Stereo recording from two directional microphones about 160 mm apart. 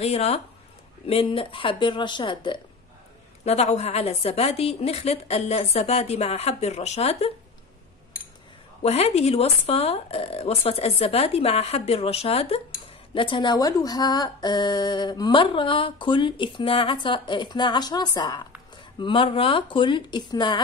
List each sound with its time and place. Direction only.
0.0 s a woman's voice: 40° left (ahead or behind)
3.4 s a woman's voice: 40° left (ahead or behind)
8.8 s a woman's voice: 40° left (ahead or behind)